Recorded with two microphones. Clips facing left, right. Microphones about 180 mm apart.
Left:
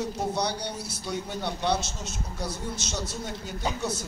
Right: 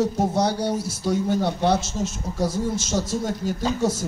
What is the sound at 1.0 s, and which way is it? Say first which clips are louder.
A man's voice: right 10 dB; 45° right (ahead or behind).